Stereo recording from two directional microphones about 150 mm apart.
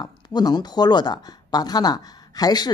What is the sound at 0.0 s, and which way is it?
A woman's voice, 25° left (ahead or behind).